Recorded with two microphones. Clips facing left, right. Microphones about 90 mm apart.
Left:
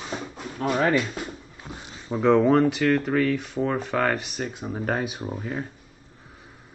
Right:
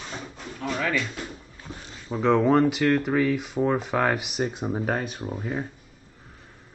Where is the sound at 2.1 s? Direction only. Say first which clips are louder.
Left 2 dB; centre (ahead or behind).